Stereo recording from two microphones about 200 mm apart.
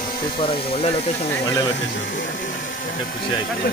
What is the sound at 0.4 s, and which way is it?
Speech, 30° left (ahead or behind).